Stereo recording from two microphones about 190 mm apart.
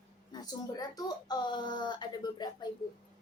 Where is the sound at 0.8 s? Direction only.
20° left (ahead or behind).